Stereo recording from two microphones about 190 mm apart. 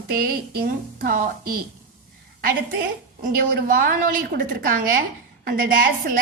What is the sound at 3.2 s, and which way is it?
A woman's voice, 45° right (ahead or behind).